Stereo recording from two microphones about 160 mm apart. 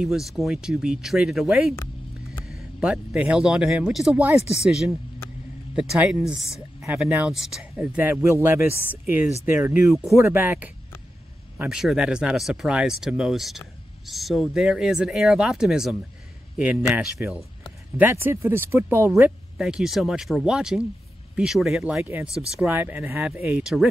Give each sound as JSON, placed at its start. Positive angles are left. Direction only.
{"t": 0.0, "sound": "speech", "side_deg": 0}
{"t": 4.4, "sound": "speech", "side_deg": 40}
{"t": 4.6, "sound": "speech", "side_deg": -5}
{"t": 19.6, "sound": "speech", "side_deg": 0}